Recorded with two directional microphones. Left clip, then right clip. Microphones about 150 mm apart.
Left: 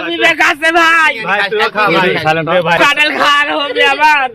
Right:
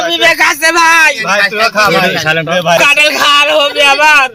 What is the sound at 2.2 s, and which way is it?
Speech, 20° left (ahead or behind).